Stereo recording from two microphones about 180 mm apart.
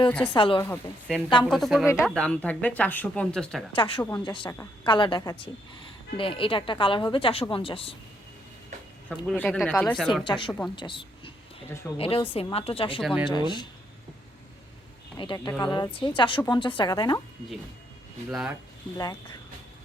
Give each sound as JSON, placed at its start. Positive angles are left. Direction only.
{"t": 0.3, "sound": "a woman's voice", "side_deg": 25}
{"t": 0.6, "sound": "speech", "side_deg": 10}
{"t": 3.7, "sound": "a woman's voice", "side_deg": 30}
{"t": 4.5, "sound": "speech", "side_deg": 15}
{"t": 4.9, "sound": "a woman's voice", "side_deg": 25}
{"t": 9.0, "sound": "speech", "side_deg": 5}
{"t": 10.2, "sound": "a woman's voice", "side_deg": 25}
{"t": 13.0, "sound": "speech", "side_deg": 0}
{"t": 13.3, "sound": "a woman's voice", "side_deg": 25}
{"t": 15.2, "sound": "a woman's voice", "side_deg": 25}
{"t": 18.3, "sound": "speech", "side_deg": -5}